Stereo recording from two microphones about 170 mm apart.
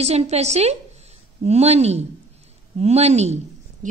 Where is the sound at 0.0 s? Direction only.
40° right (ahead or behind).